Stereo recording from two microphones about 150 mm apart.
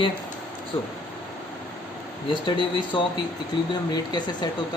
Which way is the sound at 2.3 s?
30° left (ahead or behind).